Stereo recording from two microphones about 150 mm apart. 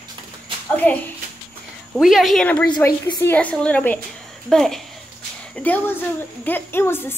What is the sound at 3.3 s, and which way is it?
A woman's voice, 5° left (ahead or behind).